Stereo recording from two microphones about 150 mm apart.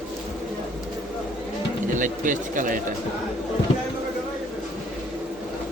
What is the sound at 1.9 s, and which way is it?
Speech, 60° right (ahead or behind).